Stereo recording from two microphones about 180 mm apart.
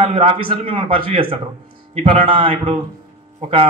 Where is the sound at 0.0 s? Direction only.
30° right (ahead or behind).